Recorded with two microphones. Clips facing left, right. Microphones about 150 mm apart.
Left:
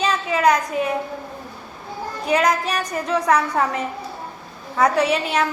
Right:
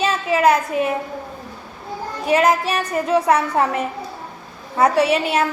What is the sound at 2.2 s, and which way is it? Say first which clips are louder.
Speech: right 3 dB; 5° right (ahead or behind).